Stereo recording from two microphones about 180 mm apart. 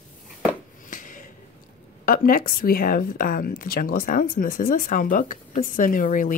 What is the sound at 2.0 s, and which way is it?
Speech, 50° left (ahead or behind).